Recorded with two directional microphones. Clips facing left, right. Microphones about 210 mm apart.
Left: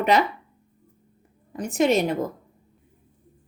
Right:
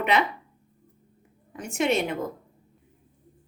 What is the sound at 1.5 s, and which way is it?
Speech, 40° left (ahead or behind).